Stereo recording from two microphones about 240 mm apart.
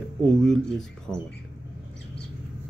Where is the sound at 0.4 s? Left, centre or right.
Centre.